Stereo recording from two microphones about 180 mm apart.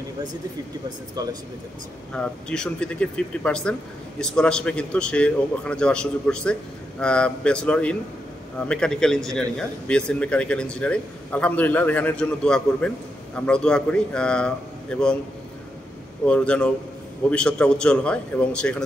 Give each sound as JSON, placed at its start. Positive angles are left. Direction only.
{"t": 0.8, "sound": "speech", "side_deg": -20}
{"t": 2.1, "sound": "a man's voice", "side_deg": 5}
{"t": 16.3, "sound": "a man's voice", "side_deg": 5}